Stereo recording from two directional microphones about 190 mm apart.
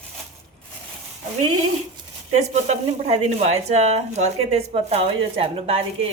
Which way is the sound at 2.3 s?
35° right (ahead or behind).